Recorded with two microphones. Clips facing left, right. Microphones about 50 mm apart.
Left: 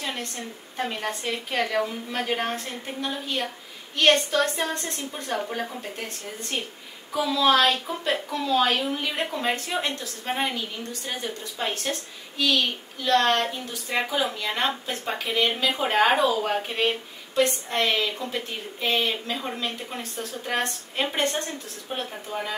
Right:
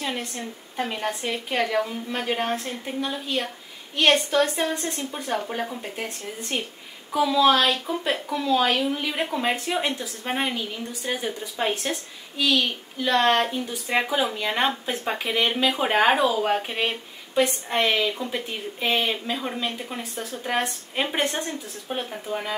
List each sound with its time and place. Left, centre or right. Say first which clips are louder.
0.0 s a woman's voice: right 2 dB; centre